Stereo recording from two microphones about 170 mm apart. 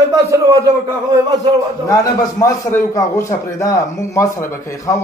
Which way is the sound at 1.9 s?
20° left (ahead or behind).